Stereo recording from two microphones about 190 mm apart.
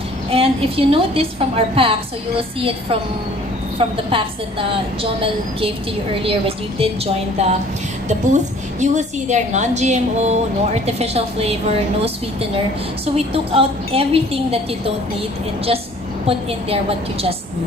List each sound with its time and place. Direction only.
0.3 s a woman's voice: 30° right (ahead or behind)
16.3 s a woman's voice: 30° right (ahead or behind)